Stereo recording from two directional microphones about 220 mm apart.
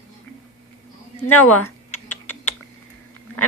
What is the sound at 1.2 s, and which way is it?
Speech, 90° left.